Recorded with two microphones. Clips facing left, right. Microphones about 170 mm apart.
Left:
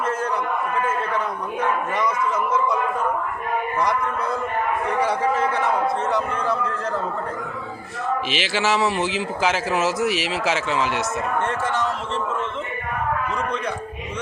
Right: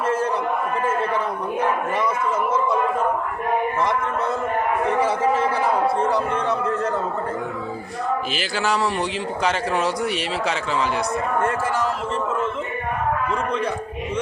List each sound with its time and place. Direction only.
0.0 s a sound: 30° right (ahead or behind)
1.6 s a man's voice: 30° right (ahead or behind)
8.3 s a man's voice: centre (ahead or behind)